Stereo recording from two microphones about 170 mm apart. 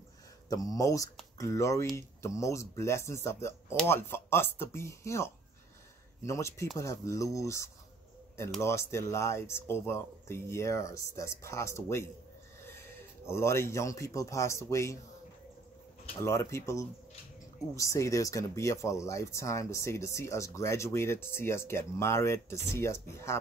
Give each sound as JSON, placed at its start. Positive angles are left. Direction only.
{"t": 0.5, "sound": "speech", "side_deg": 20}
{"t": 16.2, "sound": "speech", "side_deg": 15}